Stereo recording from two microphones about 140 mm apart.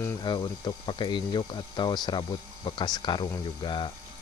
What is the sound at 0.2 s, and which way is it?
Speech, 30° left (ahead or behind).